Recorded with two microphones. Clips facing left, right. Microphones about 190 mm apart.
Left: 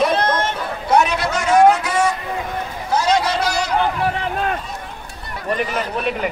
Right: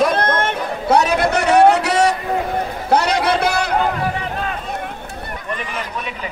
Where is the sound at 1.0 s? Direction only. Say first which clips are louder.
Right 4 dB; 55° right (ahead or behind).